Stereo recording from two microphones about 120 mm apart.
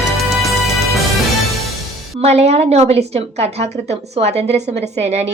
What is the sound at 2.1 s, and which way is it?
A woman's voice, 60° right (ahead or behind).